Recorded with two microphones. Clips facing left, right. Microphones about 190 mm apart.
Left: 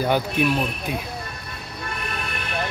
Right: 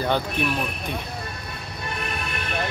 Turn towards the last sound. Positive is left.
turn(degrees=10)  # may be behind; listen again after turning